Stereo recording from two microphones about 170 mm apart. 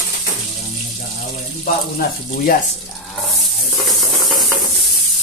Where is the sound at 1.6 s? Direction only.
60° left (ahead or behind).